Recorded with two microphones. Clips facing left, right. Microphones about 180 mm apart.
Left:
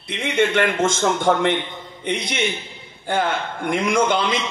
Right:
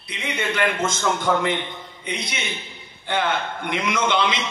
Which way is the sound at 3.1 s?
45° left (ahead or behind).